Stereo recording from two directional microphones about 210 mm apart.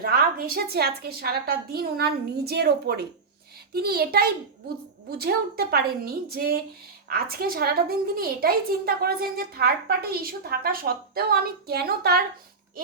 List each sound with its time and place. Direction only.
0.0 s a woman's voice: 45° right (ahead or behind)